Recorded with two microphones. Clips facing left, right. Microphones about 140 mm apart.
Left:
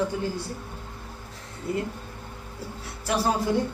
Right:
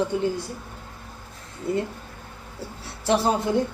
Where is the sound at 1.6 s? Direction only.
25° right (ahead or behind).